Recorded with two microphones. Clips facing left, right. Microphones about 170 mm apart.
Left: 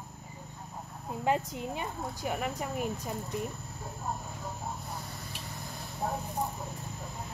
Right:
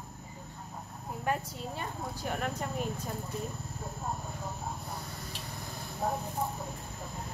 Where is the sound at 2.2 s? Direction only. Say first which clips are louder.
Left 1 dB; 10° left (ahead or behind).